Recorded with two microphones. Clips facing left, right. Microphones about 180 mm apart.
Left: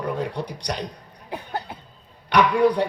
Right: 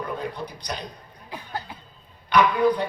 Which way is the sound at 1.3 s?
55° left (ahead or behind).